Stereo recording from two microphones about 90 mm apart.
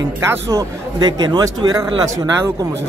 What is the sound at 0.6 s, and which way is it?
Speech, 50° right (ahead or behind).